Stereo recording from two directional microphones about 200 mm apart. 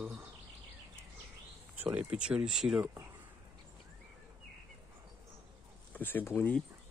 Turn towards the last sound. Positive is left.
turn(degrees=10)  # may be behind; listen again after turning